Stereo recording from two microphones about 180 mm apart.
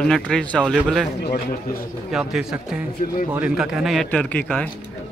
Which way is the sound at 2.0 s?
Centre (ahead or behind).